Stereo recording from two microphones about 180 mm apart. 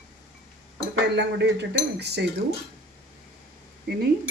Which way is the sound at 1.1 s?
75° right (ahead or behind).